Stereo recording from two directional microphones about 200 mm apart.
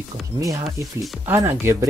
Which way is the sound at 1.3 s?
10° right (ahead or behind).